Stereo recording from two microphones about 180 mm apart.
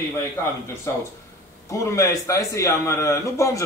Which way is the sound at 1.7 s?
15° left (ahead or behind).